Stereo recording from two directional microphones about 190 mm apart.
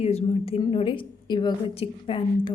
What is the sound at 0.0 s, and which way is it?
A woman's voice, 35° left (ahead or behind).